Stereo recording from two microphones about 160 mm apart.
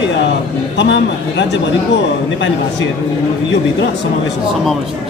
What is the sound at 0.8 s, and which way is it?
Speech, 90° left.